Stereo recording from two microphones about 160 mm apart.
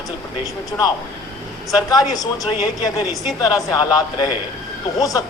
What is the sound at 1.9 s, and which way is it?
Speech, 25° left (ahead or behind).